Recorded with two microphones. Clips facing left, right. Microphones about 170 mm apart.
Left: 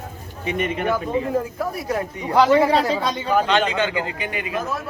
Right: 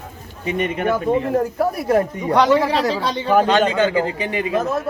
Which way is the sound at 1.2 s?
65° right (ahead or behind).